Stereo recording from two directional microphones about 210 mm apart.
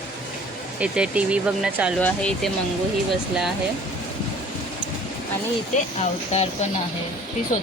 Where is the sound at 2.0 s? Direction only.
5° left (ahead or behind).